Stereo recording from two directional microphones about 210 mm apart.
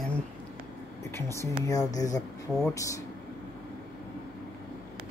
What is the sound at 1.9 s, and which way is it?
Speech, 15° left (ahead or behind).